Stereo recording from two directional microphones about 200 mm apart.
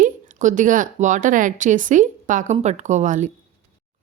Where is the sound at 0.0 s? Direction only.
40° right (ahead or behind).